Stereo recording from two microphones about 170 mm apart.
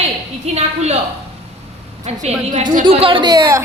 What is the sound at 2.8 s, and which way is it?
Speech, 30° right (ahead or behind).